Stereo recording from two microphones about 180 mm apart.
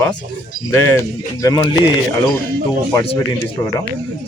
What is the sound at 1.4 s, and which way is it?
Speech, 20° left (ahead or behind).